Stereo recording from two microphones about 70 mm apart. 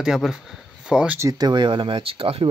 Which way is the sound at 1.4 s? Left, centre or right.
Right.